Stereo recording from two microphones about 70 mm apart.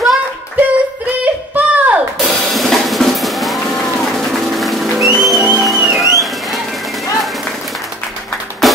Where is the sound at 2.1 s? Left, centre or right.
Centre.